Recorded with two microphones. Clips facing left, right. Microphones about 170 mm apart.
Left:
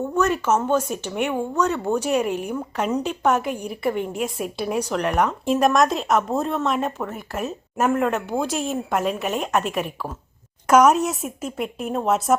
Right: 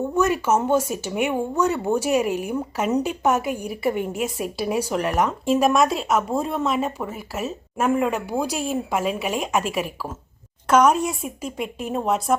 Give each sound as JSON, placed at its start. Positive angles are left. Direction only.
{"t": 0.0, "sound": "a woman's voice", "side_deg": -10}
{"t": 10.7, "sound": "a woman's voice", "side_deg": 5}